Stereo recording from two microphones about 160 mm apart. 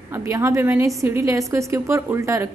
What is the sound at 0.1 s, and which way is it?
A woman's voice, 15° right (ahead or behind).